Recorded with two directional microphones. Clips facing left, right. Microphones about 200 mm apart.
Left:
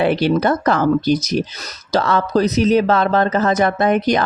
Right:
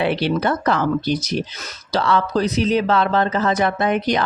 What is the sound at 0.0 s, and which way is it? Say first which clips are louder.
Speech: left 4 dB; 45° left (ahead or behind).